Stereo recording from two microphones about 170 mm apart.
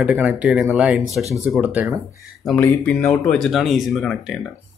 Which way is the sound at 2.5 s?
10° left (ahead or behind).